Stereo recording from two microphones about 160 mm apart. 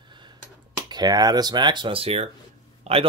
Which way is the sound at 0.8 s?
25° right (ahead or behind).